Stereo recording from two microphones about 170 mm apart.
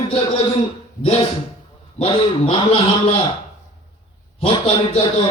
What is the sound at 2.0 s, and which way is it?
A man's voice, 35° left (ahead or behind).